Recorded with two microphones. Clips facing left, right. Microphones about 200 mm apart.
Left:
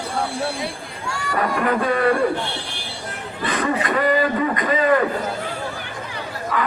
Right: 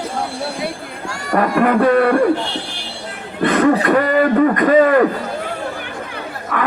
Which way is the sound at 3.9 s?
60° right (ahead or behind).